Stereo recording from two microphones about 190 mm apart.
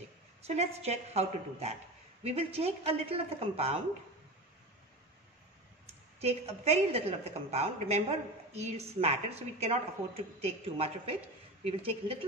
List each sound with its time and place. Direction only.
0.4 s a woman's voice: 35° right (ahead or behind)
6.2 s a woman's voice: 35° right (ahead or behind)